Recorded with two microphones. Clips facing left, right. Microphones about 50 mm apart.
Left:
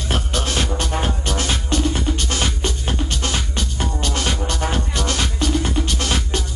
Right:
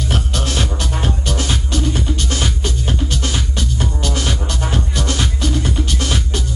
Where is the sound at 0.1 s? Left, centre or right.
Left.